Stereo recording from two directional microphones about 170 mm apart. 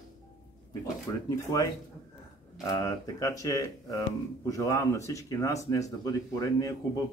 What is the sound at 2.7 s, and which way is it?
Speech, 20° left (ahead or behind).